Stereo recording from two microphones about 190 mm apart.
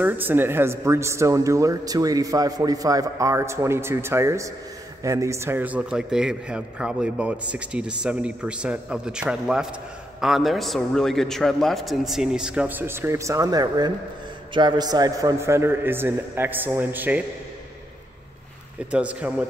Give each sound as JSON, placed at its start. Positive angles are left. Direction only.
{"t": 0.0, "sound": "a man's voice", "side_deg": -10}
{"t": 18.9, "sound": "speech", "side_deg": -5}